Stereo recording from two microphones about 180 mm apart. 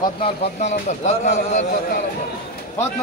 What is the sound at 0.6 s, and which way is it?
Speech, 40° left (ahead or behind).